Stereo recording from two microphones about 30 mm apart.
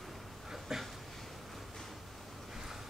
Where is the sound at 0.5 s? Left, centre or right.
Centre.